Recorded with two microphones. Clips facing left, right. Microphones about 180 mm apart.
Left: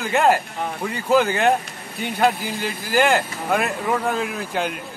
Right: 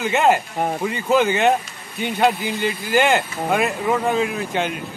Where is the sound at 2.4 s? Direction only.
60° right (ahead or behind).